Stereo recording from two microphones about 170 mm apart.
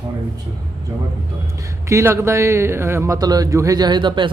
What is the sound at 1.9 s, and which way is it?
Speech, 15° right (ahead or behind).